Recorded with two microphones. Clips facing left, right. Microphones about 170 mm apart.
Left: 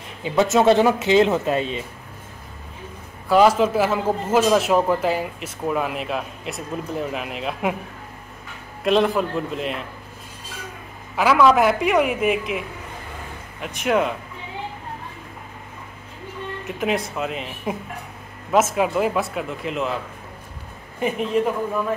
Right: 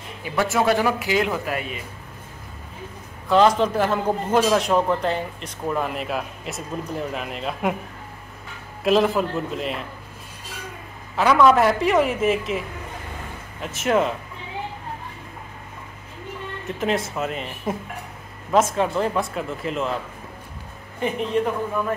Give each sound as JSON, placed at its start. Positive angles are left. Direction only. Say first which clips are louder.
{"t": 0.2, "sound": "speech", "louder": "left 5 dB", "side_deg": 20}
{"t": 3.3, "sound": "a man's voice", "louder": "left 1 dB", "side_deg": 5}
{"t": 8.8, "sound": "a man's voice", "louder": "even", "side_deg": 0}
{"t": 11.1, "sound": "a man's voice", "louder": "even", "side_deg": 0}
{"t": 16.6, "sound": "a man's voice", "louder": "even", "side_deg": 0}